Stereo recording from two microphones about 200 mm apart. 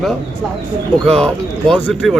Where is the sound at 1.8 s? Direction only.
Centre (ahead or behind).